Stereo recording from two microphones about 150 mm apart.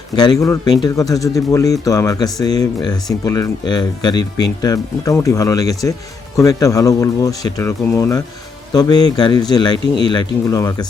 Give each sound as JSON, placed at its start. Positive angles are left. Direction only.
{"t": 0.2, "sound": "speech", "side_deg": 25}